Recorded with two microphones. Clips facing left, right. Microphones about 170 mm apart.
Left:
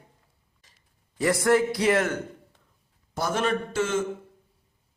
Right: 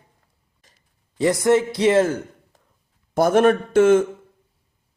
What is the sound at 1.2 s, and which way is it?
Speech, 20° right (ahead or behind).